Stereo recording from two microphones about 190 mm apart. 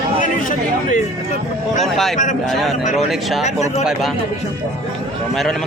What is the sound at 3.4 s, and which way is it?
Speech, 35° left (ahead or behind).